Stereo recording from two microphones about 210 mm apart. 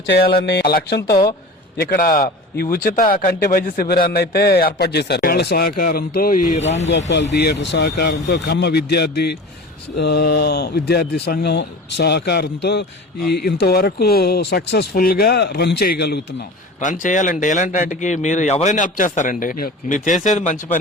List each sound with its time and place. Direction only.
0.3 s a man's voice: 50° left (ahead or behind); by 6.8 s 35° left (ahead or behind)
6.8 s a man's voice: 55° left (ahead or behind)
16.8 s speech: 35° left (ahead or behind)